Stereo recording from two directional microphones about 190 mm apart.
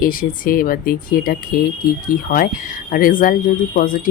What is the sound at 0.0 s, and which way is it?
Speech, 50° left (ahead or behind).